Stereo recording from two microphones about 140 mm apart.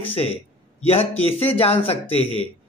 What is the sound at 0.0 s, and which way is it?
A man's voice, 40° left (ahead or behind).